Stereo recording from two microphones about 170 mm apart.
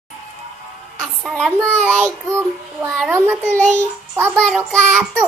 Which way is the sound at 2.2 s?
15° right (ahead or behind).